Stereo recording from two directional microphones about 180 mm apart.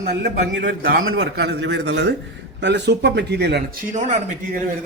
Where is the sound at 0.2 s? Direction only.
70° right (ahead or behind); by 4.1 s 45° right (ahead or behind).